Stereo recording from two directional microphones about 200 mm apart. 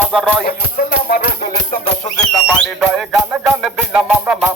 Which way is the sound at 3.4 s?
5° right (ahead or behind).